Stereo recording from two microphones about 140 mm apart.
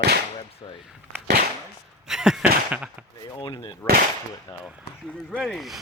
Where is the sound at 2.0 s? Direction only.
5° right (ahead or behind).